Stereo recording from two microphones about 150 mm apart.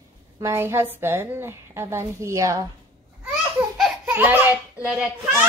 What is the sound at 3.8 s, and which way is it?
A child's voice, 10° right (ahead or behind).